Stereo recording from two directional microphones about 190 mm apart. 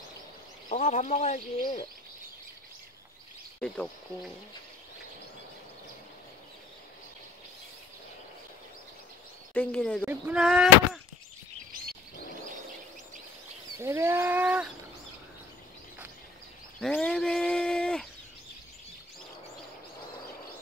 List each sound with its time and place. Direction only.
0.7 s speech: 40° left (ahead or behind)
1.6 s speech: 25° left (ahead or behind)
3.6 s speech: 5° left (ahead or behind)
9.5 s speech: 5° left (ahead or behind)
10.0 s speech: 5° right (ahead or behind)
13.7 s wild animals: 15° right (ahead or behind)
16.8 s speech: 5° left (ahead or behind)